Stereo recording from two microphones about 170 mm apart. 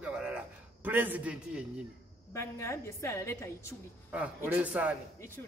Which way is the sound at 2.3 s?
15° left (ahead or behind).